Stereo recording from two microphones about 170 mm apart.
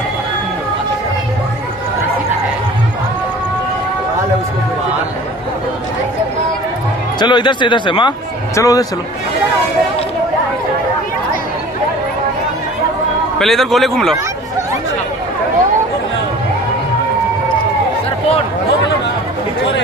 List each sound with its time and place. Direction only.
7.2 s speech: 25° left (ahead or behind)
13.4 s a man's voice: centre (ahead or behind)